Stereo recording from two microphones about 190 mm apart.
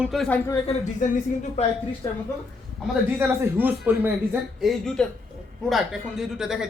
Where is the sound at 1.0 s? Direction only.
40° left (ahead or behind).